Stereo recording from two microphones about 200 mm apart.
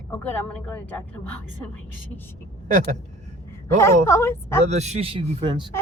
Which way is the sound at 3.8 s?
15° left (ahead or behind).